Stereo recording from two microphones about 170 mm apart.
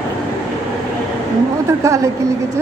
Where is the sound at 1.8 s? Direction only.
20° right (ahead or behind).